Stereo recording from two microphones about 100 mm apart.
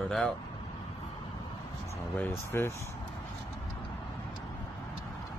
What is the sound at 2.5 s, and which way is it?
Speech, 20° left (ahead or behind).